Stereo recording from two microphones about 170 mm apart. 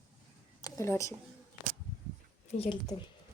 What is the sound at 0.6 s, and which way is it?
Speech, 20° left (ahead or behind).